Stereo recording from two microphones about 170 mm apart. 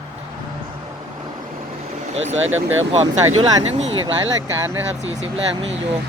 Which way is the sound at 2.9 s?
40° right (ahead or behind).